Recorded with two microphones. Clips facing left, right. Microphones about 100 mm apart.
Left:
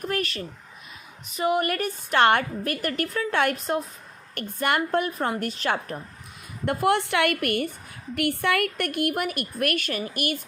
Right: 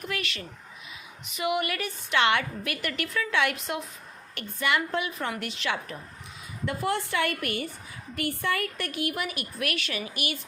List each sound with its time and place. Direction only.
0.0 s a woman's voice: 40° left (ahead or behind)
6.7 s a woman's voice: 65° left (ahead or behind); by 10.0 s 45° left (ahead or behind)